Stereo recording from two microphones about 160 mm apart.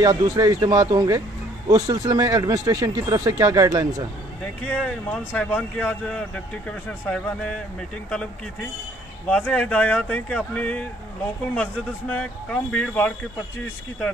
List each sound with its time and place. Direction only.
0.0 s speech: 25° right (ahead or behind)
4.6 s speech: 10° left (ahead or behind)
9.3 s speech: 5° left (ahead or behind)